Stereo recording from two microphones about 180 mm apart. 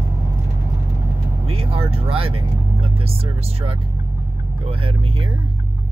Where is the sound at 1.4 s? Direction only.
30° right (ahead or behind).